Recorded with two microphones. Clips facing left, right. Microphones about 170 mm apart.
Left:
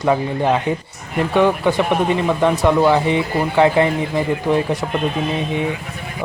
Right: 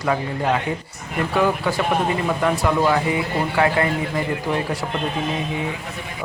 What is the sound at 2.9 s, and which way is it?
Speech, 25° left (ahead or behind).